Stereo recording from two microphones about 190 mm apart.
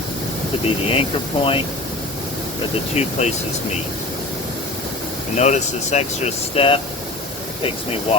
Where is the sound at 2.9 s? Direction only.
35° left (ahead or behind).